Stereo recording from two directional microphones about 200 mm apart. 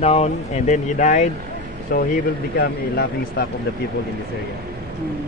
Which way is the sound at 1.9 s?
50° left (ahead or behind).